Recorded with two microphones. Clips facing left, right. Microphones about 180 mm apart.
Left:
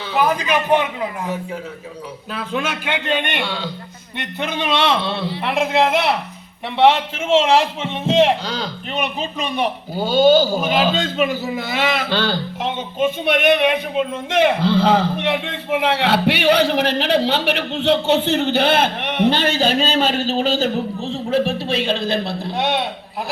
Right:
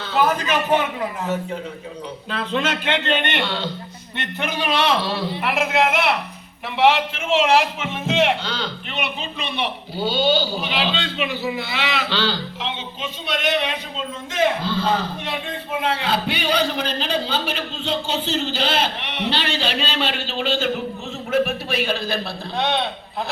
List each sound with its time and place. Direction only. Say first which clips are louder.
0.1 s a man's voice: left 1 dB; 15° left (ahead or behind)
2.3 s a man's voice: right 1 dB; 10° left (ahead or behind)